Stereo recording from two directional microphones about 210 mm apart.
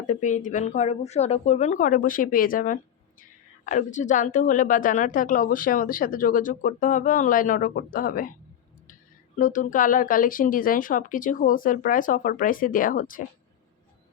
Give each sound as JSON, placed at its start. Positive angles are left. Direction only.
{"t": 0.1, "sound": "a woman's voice", "side_deg": 35}
{"t": 9.4, "sound": "a woman's voice", "side_deg": 40}